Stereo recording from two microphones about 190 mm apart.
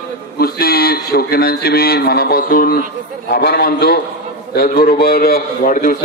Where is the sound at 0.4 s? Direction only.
50° left (ahead or behind).